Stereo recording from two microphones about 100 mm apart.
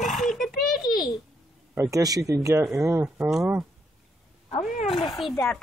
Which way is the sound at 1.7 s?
30° right (ahead or behind).